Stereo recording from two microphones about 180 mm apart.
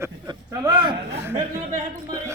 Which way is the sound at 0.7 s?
25° right (ahead or behind).